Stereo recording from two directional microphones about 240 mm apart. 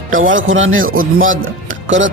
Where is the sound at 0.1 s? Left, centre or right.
Right.